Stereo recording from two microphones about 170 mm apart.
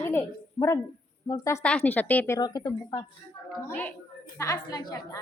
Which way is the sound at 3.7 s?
10° left (ahead or behind).